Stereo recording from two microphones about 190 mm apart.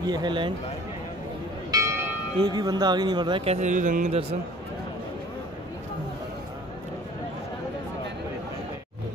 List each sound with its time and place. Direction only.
0.0 s speech: 20° right (ahead or behind)
1.7 s speech: 15° right (ahead or behind); by 4.4 s 30° right (ahead or behind)